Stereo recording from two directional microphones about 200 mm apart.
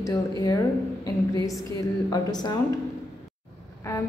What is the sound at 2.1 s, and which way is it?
Speech, 20° left (ahead or behind).